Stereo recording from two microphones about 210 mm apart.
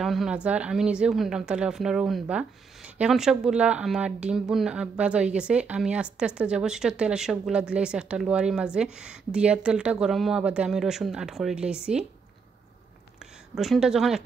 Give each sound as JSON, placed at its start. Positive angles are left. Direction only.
{"t": 0.0, "sound": "a woman's voice", "side_deg": 0}
{"t": 13.6, "sound": "a woman's voice", "side_deg": 0}